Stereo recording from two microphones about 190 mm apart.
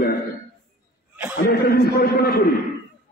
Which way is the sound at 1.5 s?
55° left (ahead or behind).